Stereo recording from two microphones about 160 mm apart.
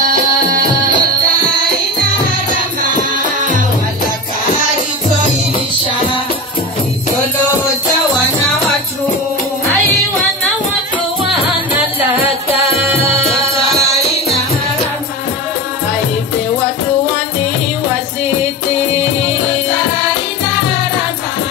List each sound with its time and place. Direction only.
0.0 s music: 60° right (ahead or behind)